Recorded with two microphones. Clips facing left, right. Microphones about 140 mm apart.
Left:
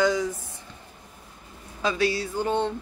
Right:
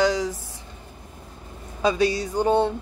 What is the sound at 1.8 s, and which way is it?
Speech, 20° right (ahead or behind).